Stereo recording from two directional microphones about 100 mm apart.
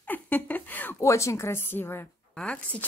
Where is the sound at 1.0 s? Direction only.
30° left (ahead or behind).